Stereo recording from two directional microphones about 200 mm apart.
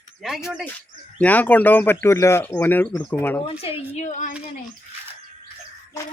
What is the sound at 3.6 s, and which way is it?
Speech, 30° left (ahead or behind).